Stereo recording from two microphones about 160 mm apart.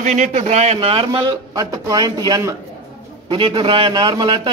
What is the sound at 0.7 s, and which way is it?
A man's voice, 30° right (ahead or behind).